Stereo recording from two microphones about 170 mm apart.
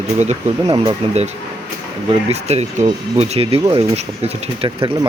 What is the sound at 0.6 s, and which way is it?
Speech, 25° right (ahead or behind).